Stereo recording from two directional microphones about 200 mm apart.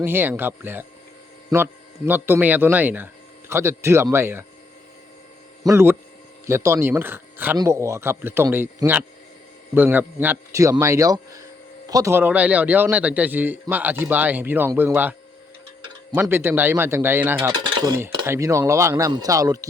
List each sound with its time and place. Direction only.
0.0 s a man's voice: 10° right (ahead or behind)
5.6 s a man's voice: 10° right (ahead or behind)
16.1 s a man's voice: 10° right (ahead or behind)
17.5 s stir: 20° right (ahead or behind)
18.3 s a man's voice: 15° right (ahead or behind)